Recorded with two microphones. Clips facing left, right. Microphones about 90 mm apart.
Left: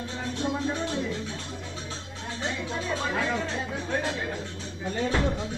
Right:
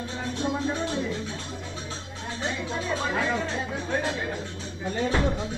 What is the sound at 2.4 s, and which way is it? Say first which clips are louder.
Music: right 1 dB; 15° right (ahead or behind).